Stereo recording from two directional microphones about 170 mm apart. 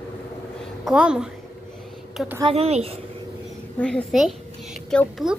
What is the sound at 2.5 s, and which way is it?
Speech, 40° right (ahead or behind).